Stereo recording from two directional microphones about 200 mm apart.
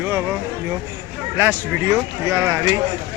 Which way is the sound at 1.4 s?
15° right (ahead or behind).